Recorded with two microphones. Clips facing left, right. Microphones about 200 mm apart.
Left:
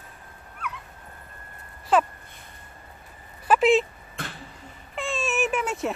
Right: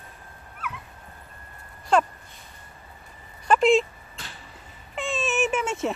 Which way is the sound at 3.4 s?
5° left (ahead or behind).